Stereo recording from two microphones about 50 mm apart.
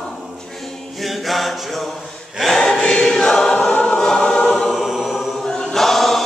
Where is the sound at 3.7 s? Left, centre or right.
Left.